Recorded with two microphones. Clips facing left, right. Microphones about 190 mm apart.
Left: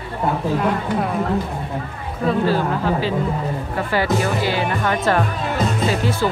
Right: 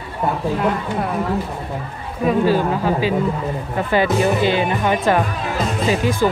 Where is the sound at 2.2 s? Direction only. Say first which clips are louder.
Right 2 dB; 15° right (ahead or behind).